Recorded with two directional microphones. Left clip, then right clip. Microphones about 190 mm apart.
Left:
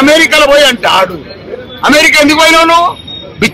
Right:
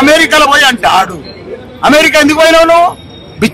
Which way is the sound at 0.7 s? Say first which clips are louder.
Even; 20° right (ahead or behind).